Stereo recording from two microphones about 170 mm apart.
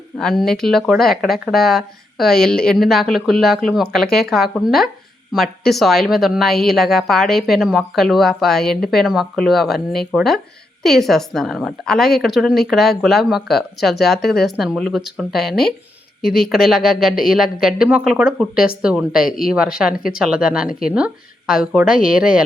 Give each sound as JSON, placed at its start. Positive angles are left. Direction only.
{"t": 0.2, "sound": "a woman's voice", "side_deg": 0}
{"t": 16.2, "sound": "speech", "side_deg": 60}
{"t": 16.5, "sound": "a woman's voice", "side_deg": 0}
{"t": 20.7, "sound": "speech", "side_deg": 60}
{"t": 20.9, "sound": "a woman's voice", "side_deg": -5}